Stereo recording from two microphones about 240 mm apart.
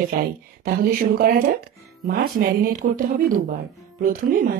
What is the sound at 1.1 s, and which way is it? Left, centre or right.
Speech, right.